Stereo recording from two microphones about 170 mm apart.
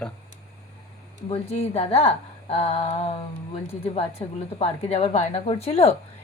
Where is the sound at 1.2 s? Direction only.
40° left (ahead or behind).